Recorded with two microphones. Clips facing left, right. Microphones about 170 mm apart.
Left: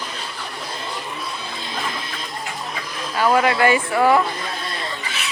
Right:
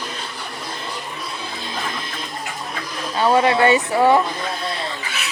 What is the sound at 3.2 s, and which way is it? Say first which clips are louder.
Speech: right 1 dB; 25° right (ahead or behind).